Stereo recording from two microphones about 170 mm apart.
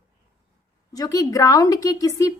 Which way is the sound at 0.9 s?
20° left (ahead or behind).